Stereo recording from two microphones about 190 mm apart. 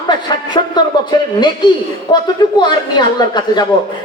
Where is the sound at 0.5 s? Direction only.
25° left (ahead or behind).